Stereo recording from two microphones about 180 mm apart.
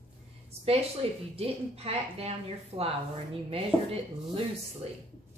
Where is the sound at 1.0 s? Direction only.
35° right (ahead or behind).